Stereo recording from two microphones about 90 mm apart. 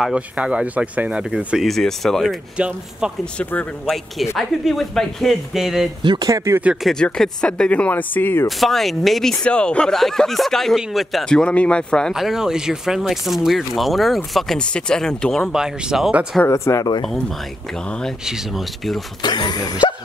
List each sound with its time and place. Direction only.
0.0 s speech: 10° right (ahead or behind)
1.3 s speech: centre (ahead or behind)
2.5 s speech: 10° right (ahead or behind)
4.4 s speech: centre (ahead or behind)
6.2 s speech: 35° right (ahead or behind)
6.8 s speech: 5° left (ahead or behind); by 8.5 s 20° left (ahead or behind)
8.5 s speech: centre (ahead or behind)
12.1 s speech: 5° right (ahead or behind)
15.5 s speech: 5° right (ahead or behind)
16.4 s speech: 30° left (ahead or behind)
18.2 s speech: 5° right (ahead or behind)
19.2 s speech: 55° left (ahead or behind)